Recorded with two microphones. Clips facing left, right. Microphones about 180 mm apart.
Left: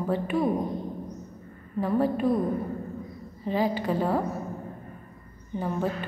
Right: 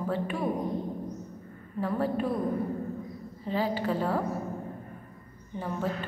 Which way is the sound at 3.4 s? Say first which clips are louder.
Left 3 dB; 15° left (ahead or behind).